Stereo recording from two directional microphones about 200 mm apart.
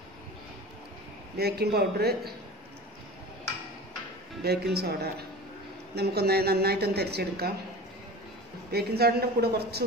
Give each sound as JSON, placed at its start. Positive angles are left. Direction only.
{"t": 1.4, "sound": "a woman's voice", "side_deg": -50}
{"t": 4.4, "sound": "a woman's voice", "side_deg": -55}
{"t": 8.7, "sound": "a woman's voice", "side_deg": -50}